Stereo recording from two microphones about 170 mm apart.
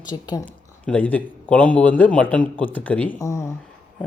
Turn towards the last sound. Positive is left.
turn(degrees=15)  # may be behind; listen again after turning